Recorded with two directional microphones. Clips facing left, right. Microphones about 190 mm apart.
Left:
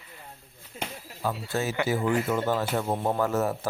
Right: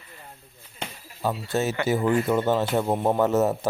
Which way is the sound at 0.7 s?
80° left.